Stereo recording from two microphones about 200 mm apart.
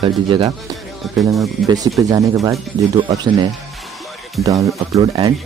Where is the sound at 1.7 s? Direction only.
20° right (ahead or behind).